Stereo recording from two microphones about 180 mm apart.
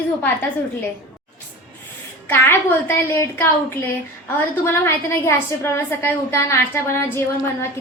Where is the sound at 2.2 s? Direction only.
10° left (ahead or behind).